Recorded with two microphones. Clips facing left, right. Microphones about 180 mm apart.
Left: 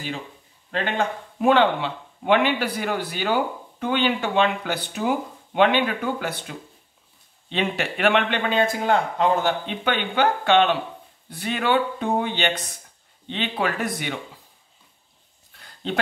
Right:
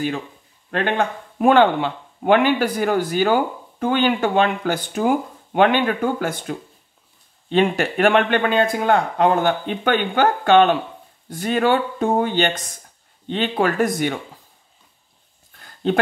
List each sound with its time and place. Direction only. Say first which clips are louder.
0.7 s speech: right 4 dB; 55° right (ahead or behind)
15.6 s dog: right 8 dB; 50° right (ahead or behind)